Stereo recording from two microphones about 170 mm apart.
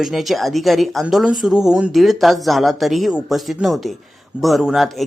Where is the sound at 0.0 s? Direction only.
Centre (ahead or behind).